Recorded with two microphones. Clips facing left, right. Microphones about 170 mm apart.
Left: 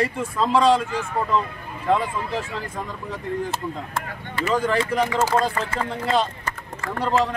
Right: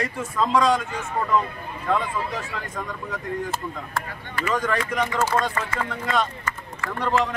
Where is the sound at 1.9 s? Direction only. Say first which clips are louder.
Left 3 dB; 30° left (ahead or behind).